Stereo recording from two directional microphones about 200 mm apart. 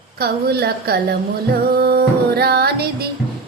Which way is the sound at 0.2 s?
50° right (ahead or behind).